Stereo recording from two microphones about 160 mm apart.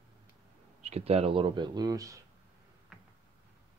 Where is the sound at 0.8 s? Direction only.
40° right (ahead or behind); by 2.2 s 20° right (ahead or behind).